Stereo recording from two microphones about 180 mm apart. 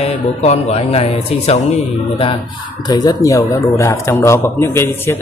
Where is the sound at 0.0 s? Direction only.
35° left (ahead or behind).